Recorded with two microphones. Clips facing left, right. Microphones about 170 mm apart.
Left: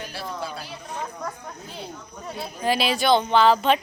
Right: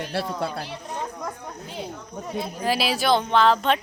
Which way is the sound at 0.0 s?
65° right (ahead or behind).